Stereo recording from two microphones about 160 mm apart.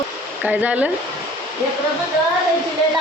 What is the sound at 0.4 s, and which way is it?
Speech, 10° right (ahead or behind).